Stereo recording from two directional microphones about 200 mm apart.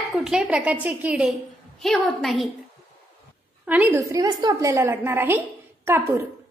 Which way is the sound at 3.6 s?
10° right (ahead or behind).